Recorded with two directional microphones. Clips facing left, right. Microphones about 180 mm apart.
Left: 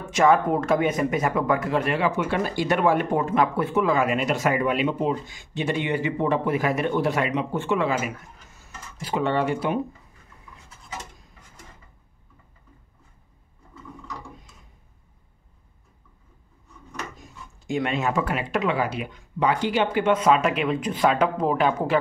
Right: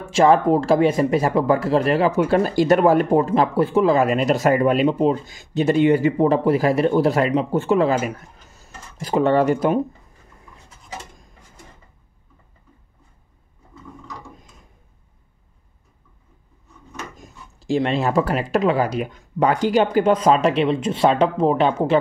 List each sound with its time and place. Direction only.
0.1 s speech: 30° right (ahead or behind)
17.2 s speech: 35° right (ahead or behind)